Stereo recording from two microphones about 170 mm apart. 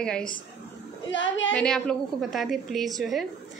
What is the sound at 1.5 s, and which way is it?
A woman's voice, 5° left (ahead or behind).